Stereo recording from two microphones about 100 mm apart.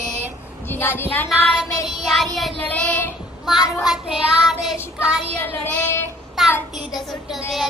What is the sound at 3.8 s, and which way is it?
Child singing, 5° right (ahead or behind).